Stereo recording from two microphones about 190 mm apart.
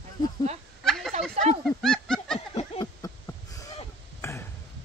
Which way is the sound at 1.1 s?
35° right (ahead or behind).